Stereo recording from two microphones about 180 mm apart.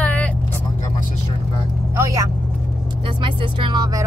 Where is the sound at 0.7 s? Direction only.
45° left (ahead or behind).